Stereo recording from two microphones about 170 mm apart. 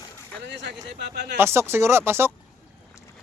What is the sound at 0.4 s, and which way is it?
Speech, 90° right.